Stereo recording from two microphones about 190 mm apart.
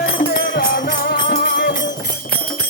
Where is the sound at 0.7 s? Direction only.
50° left (ahead or behind).